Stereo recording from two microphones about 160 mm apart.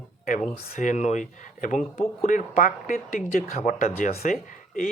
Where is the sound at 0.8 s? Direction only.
50° left (ahead or behind).